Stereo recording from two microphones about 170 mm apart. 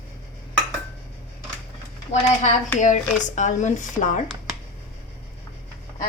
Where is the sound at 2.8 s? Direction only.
45° left (ahead or behind).